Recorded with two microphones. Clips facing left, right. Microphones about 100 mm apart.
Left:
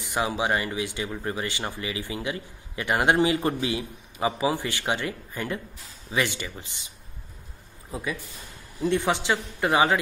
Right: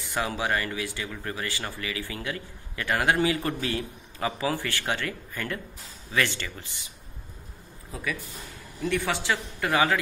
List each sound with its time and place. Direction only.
0.0 s speech: 15° left (ahead or behind)
7.9 s speech: 25° left (ahead or behind)